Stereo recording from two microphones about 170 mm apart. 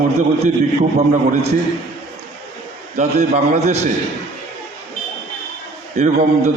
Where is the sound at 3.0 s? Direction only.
40° right (ahead or behind).